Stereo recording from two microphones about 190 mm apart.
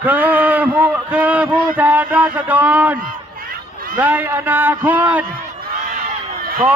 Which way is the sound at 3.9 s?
10° right (ahead or behind).